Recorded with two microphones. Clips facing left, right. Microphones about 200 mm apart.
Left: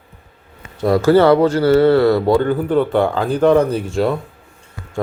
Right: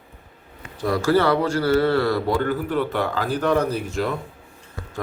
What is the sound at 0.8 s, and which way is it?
Speech, 25° left (ahead or behind).